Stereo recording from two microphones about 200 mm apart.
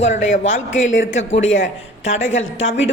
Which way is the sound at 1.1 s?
70° left (ahead or behind).